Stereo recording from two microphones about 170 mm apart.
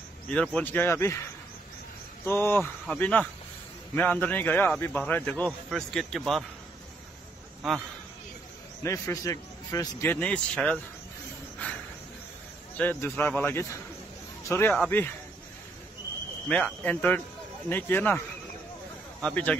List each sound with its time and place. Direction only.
0.3 s a man's voice: 5° left (ahead or behind)
2.2 s a man's voice: 15° left (ahead or behind)
8.8 s a man's voice: 20° left (ahead or behind)
11.6 s a sound: 10° left (ahead or behind)
12.7 s a man's voice: 10° left (ahead or behind)
16.4 s a man's voice: 5° left (ahead or behind)
19.2 s a man's voice: 10° left (ahead or behind)